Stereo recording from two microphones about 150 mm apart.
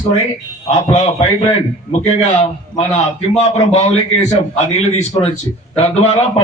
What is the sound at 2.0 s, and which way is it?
A man's voice, 45° left (ahead or behind).